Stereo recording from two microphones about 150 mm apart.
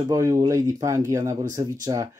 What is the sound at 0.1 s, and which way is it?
Speech, 20° right (ahead or behind).